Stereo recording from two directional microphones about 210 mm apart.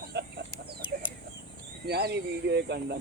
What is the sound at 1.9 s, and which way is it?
Speech, 50° right (ahead or behind).